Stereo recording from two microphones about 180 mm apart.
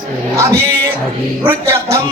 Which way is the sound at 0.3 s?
15° right (ahead or behind).